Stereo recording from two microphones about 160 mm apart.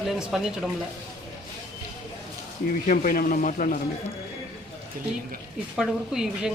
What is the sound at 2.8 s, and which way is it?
Speech, 60° left (ahead or behind).